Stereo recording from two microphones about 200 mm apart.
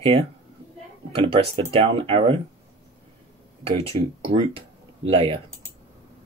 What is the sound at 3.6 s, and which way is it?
Speech, 30° right (ahead or behind).